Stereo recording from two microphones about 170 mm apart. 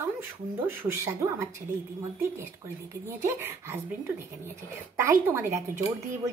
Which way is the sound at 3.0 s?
15° right (ahead or behind).